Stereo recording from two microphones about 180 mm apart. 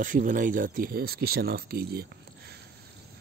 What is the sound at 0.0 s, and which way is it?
Speech, 50° right (ahead or behind).